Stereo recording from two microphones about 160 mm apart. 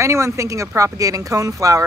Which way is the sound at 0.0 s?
20° right (ahead or behind).